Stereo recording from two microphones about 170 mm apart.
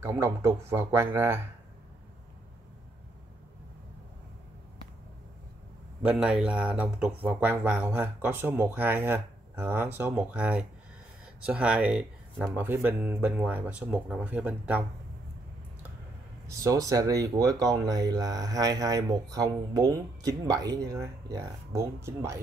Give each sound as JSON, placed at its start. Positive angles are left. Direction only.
{"t": 0.0, "sound": "speech", "side_deg": -15}
{"t": 6.0, "sound": "speech", "side_deg": -5}
{"t": 16.4, "sound": "speech", "side_deg": -20}